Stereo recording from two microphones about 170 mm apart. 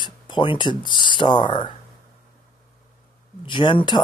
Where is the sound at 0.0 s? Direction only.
30° left (ahead or behind).